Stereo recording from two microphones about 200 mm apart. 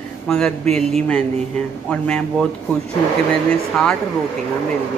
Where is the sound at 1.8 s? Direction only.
5° left (ahead or behind).